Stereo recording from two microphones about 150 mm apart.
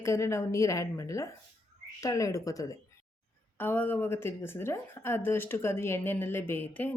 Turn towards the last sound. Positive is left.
turn(degrees=10)  # may be behind; listen again after turning